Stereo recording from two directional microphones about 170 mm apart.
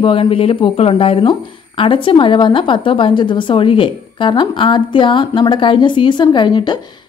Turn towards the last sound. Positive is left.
turn(degrees=25)  # may be behind; listen again after turning